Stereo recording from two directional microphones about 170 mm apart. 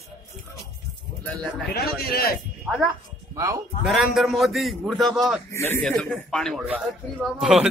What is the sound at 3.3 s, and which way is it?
Speech, 20° right (ahead or behind).